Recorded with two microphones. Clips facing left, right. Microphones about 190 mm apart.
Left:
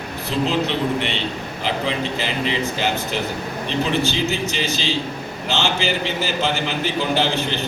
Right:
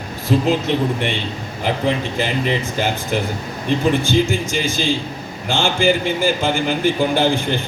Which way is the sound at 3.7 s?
50° right (ahead or behind).